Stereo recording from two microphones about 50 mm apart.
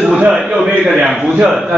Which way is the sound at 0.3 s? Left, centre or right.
Centre.